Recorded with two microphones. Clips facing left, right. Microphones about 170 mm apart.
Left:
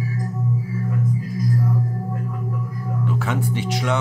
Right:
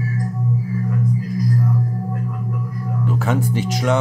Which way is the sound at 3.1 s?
40° right (ahead or behind).